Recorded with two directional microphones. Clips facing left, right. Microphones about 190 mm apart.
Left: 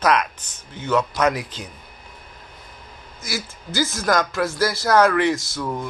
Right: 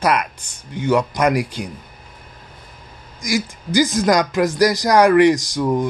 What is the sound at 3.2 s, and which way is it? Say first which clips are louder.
Speech: right 9 dB; 15° right (ahead or behind).